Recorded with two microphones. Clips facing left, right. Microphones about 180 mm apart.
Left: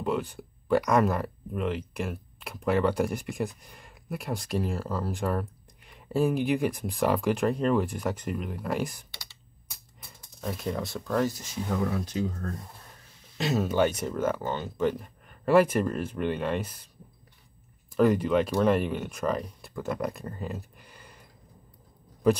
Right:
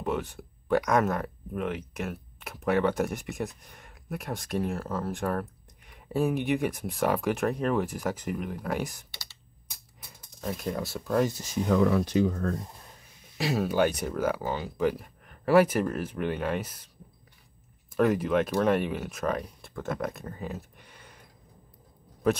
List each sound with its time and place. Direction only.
0.0 s speech: centre (ahead or behind)
10.4 s speech: centre (ahead or behind)
11.1 s speech: 20° right (ahead or behind)
11.7 s speech: 90° right
13.4 s speech: 5° right (ahead or behind)
17.9 s speech: centre (ahead or behind)